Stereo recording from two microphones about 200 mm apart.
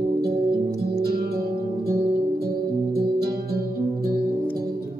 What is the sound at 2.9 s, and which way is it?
Music, 50° right (ahead or behind).